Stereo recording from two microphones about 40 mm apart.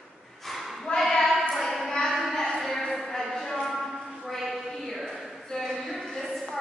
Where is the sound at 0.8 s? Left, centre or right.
Centre.